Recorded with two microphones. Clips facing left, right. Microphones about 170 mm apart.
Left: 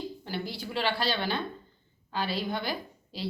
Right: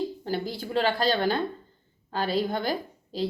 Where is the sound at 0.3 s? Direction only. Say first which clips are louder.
Right 5 dB; 45° right (ahead or behind).